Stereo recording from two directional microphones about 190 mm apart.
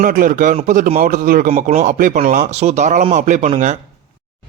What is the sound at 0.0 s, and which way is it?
Speech, 45° right (ahead or behind).